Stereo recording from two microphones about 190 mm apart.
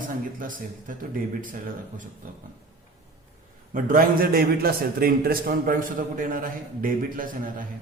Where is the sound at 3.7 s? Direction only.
45° right (ahead or behind).